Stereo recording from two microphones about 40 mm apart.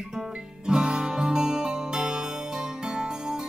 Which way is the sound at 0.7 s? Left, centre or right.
Centre.